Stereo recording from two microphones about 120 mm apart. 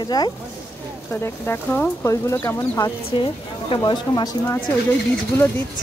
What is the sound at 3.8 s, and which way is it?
Speech, 40° left (ahead or behind).